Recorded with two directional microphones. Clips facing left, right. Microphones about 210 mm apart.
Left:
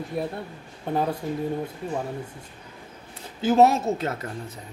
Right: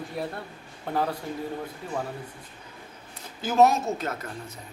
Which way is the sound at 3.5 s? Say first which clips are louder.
Left 2 dB; 35° left (ahead or behind).